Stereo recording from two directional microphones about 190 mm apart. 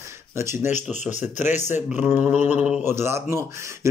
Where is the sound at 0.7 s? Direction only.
40° left (ahead or behind).